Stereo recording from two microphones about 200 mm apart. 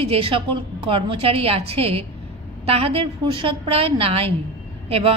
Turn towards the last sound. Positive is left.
turn(degrees=-30)  # may be behind; listen again after turning